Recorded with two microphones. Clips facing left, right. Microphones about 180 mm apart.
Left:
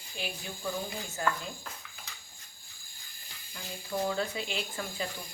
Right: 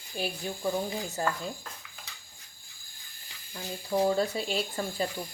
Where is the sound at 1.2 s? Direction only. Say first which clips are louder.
Right 1 dB; 40° right (ahead or behind).